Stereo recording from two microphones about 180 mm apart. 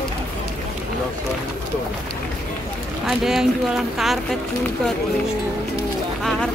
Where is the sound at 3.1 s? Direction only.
Centre (ahead or behind).